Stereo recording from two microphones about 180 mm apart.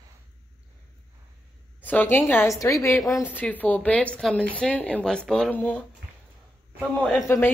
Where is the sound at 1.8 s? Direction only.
10° left (ahead or behind).